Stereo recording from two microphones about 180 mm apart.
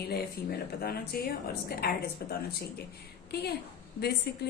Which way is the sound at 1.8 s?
60° left (ahead or behind).